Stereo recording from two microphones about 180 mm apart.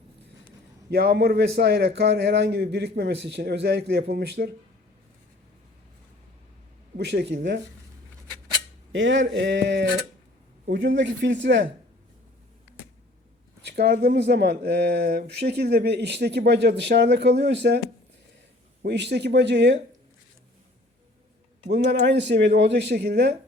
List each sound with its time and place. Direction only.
0.9 s speech: 65° right (ahead or behind)
6.9 s speech: 75° right (ahead or behind)
8.9 s speech: 90° right
13.7 s speech: 65° right (ahead or behind)
18.8 s speech: 70° right (ahead or behind)
22.0 s speech: 75° right (ahead or behind)